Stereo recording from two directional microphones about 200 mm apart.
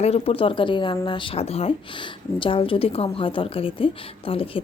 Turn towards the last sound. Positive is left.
turn(degrees=25)  # may be behind; listen again after turning